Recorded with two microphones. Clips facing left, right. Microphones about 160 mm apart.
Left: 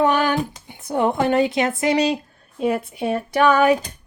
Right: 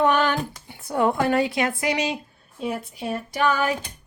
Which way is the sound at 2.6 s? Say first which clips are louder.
Left 7 dB; 65° left (ahead or behind).